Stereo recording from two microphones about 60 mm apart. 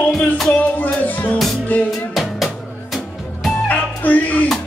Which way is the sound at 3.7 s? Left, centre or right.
Left.